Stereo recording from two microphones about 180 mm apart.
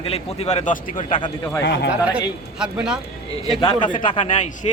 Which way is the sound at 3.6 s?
25° left (ahead or behind).